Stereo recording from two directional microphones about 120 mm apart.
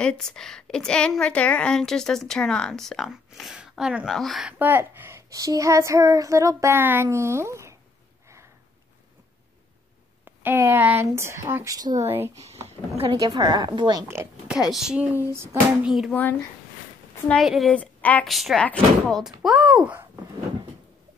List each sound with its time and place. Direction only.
0.0 s a woman's voice: 5° left (ahead or behind)
4.5 s speech: 15° right (ahead or behind)
5.3 s child singing: 30° right (ahead or behind)
10.2 s child singing: 15° right (ahead or behind); by 12.1 s 30° right (ahead or behind)
12.6 s speech: 55° right (ahead or behind)
13.1 s a woman's voice: 35° right (ahead or behind)
14.0 s child singing: 20° right (ahead or behind)
14.5 s speech: 5° right (ahead or behind)
15.8 s a woman's voice: centre (ahead or behind)
17.3 s a woman's voice: centre (ahead or behind)
17.7 s a woman's voice: 15° left (ahead or behind)
18.2 s a woman's voice: centre (ahead or behind)